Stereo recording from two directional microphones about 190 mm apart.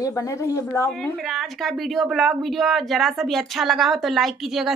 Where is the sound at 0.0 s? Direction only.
15° left (ahead or behind).